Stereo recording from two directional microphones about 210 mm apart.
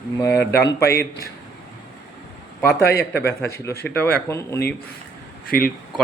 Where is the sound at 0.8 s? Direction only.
50° left (ahead or behind).